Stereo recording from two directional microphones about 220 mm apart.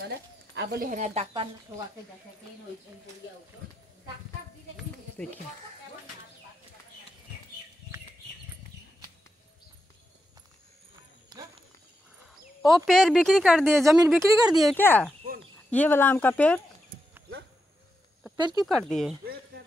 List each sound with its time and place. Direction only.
0.6 s speech: 45° right (ahead or behind); by 1.5 s 25° right (ahead or behind)
4.7 s a sound: 5° left (ahead or behind)
12.6 s speech: centre (ahead or behind)
18.3 s speech: 20° right (ahead or behind)
18.9 s speech: centre (ahead or behind)